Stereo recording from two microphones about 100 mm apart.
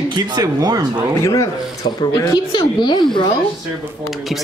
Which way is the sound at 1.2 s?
30° left (ahead or behind).